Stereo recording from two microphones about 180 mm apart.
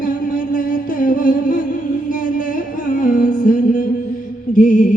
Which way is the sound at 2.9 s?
50° left (ahead or behind).